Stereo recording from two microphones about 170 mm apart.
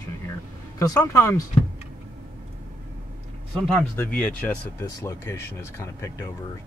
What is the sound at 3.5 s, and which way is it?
Speech, centre (ahead or behind).